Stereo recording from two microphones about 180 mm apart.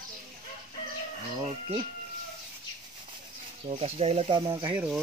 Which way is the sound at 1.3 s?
30° right (ahead or behind).